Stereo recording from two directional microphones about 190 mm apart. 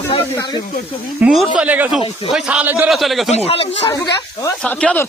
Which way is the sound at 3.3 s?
30° left (ahead or behind).